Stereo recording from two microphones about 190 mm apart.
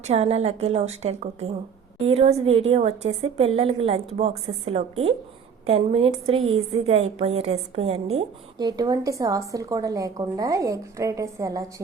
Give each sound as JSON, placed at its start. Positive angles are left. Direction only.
{"t": 0.1, "sound": "a woman's voice", "side_deg": -35}
{"t": 8.5, "sound": "speech", "side_deg": -20}